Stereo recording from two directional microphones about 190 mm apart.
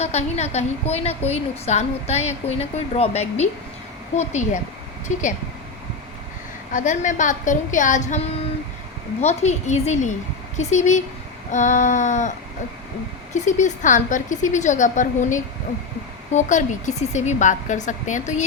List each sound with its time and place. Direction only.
0.0 s a woman's voice: 35° left (ahead or behind)
6.7 s a woman's voice: 40° left (ahead or behind)
13.3 s a woman's voice: 40° left (ahead or behind)